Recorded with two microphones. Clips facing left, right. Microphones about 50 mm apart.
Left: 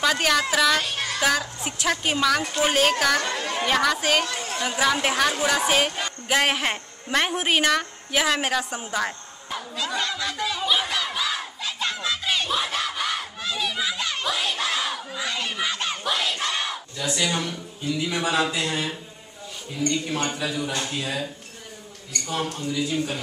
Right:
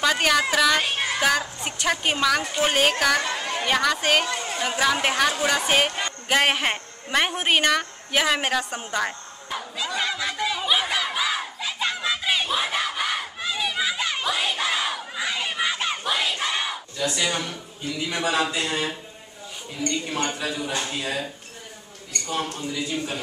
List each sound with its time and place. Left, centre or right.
0.0 s speech: centre
0.7 s child singing: right
1.6 s a woman's voice: centre
9.9 s a sound: centre
17.0 s a woman's voice: centre